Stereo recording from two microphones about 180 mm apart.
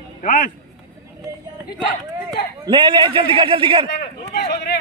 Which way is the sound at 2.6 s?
25° right (ahead or behind).